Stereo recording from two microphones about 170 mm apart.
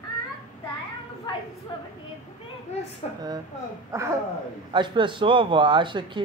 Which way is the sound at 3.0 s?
35° left (ahead or behind).